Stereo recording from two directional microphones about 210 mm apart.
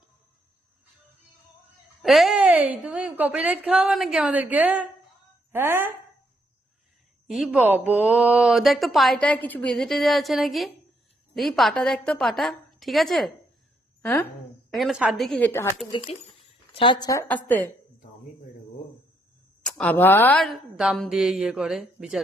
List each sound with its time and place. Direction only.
2.0 s speech: centre (ahead or behind)
7.3 s a woman's voice: centre (ahead or behind)
15.9 s a woman's voice: 25° left (ahead or behind); by 17.4 s 10° left (ahead or behind)
19.6 s speech: 5° left (ahead or behind)